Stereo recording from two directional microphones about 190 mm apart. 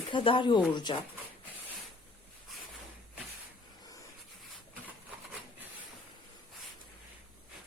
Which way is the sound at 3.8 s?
20° left (ahead or behind).